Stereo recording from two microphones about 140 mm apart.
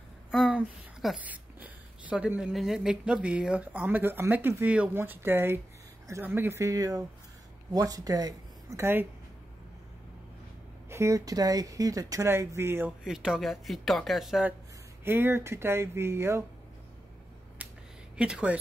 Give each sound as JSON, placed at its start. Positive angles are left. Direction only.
{"t": 0.3, "sound": "speech", "side_deg": -5}
{"t": 10.9, "sound": "speech", "side_deg": -20}
{"t": 13.0, "sound": "speech", "side_deg": -5}
{"t": 15.0, "sound": "speech", "side_deg": -15}
{"t": 17.6, "sound": "a sound", "side_deg": -10}
{"t": 18.1, "sound": "speech", "side_deg": -5}